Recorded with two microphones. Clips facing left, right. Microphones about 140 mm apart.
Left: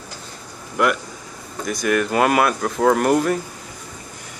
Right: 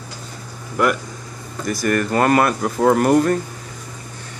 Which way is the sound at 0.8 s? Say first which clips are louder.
Right 1 dB; centre (ahead or behind).